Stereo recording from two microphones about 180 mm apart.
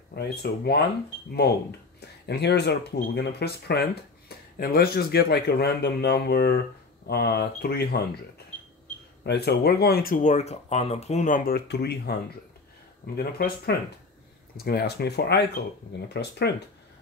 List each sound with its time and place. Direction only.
0.1 s speech: 65° left (ahead or behind)
9.2 s speech: 65° left (ahead or behind)